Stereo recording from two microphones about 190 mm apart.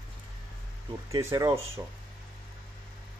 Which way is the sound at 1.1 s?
20° right (ahead or behind).